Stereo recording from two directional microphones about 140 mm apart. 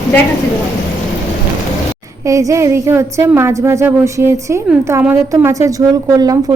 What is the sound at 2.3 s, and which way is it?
A woman's voice, 25° right (ahead or behind).